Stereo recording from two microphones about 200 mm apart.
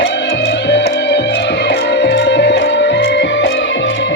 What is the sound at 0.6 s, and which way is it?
Music, 60° left (ahead or behind).